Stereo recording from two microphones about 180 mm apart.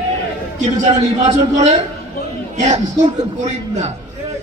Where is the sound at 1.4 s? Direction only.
40° right (ahead or behind).